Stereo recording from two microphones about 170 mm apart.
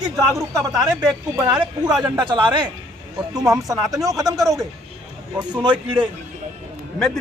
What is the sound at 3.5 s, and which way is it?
A man's voice, centre (ahead or behind).